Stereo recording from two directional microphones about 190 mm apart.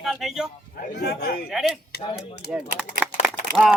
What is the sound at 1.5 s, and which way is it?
Speech, centre (ahead or behind).